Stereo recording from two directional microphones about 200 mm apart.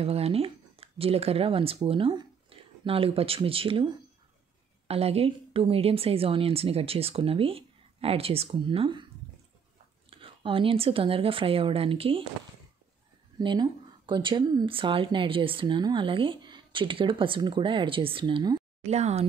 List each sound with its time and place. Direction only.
0.0 s speech: 30° right (ahead or behind)
10.0 s speech: 25° right (ahead or behind)
13.4 s speech: 25° right (ahead or behind)
18.9 s speech: 35° right (ahead or behind)